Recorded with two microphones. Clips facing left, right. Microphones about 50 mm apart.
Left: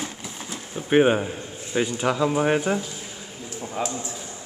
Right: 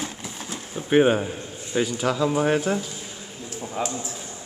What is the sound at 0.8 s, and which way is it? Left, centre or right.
Speech, centre.